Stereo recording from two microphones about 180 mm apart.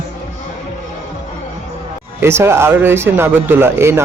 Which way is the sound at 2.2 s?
15° right (ahead or behind).